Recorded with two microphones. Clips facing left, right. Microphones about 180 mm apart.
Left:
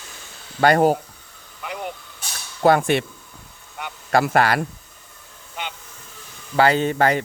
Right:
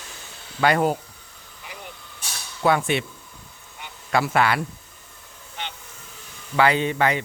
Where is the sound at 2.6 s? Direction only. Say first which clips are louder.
Left 4 dB; 45° left (ahead or behind).